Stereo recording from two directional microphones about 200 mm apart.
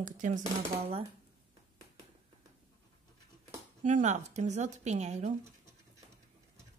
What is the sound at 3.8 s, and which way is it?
Speech, 35° right (ahead or behind).